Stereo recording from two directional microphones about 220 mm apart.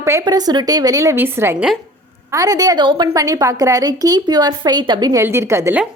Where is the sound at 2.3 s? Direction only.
15° right (ahead or behind).